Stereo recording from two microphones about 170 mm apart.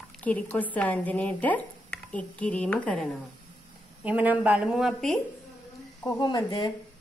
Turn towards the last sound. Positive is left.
turn(degrees=25)  # may be behind; listen again after turning